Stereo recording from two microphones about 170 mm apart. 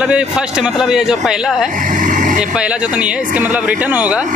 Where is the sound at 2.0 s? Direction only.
50° right (ahead or behind).